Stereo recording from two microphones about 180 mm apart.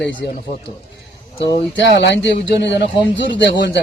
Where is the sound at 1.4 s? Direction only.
75° left (ahead or behind).